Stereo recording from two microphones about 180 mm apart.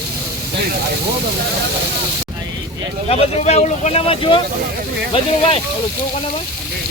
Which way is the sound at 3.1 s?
35° left (ahead or behind).